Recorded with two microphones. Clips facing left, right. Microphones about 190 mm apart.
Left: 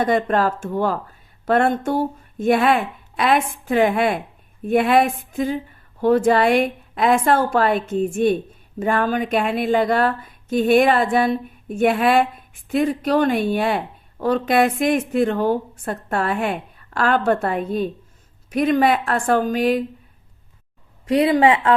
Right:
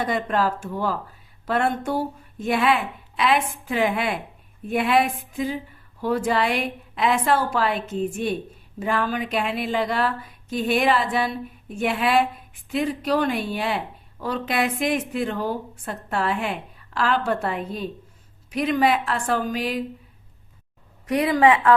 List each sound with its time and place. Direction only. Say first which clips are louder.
0.0 s speech: left 5 dB; 45° left (ahead or behind)
21.1 s a woman's voice: left 3 dB; 30° left (ahead or behind)